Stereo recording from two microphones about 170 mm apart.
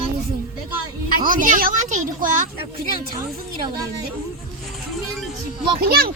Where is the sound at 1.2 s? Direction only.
50° right (ahead or behind).